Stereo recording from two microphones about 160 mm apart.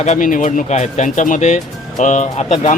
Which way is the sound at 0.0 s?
50° left (ahead or behind).